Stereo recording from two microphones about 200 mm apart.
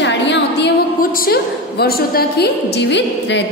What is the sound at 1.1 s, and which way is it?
A woman's voice, 50° left (ahead or behind).